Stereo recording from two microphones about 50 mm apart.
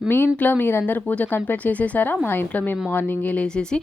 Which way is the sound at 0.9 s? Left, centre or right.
Left.